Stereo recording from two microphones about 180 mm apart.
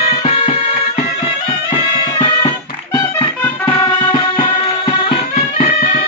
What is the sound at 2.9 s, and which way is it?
Music, 20° left (ahead or behind).